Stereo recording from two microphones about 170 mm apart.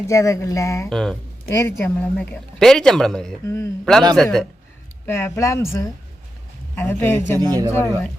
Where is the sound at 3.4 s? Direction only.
15° left (ahead or behind).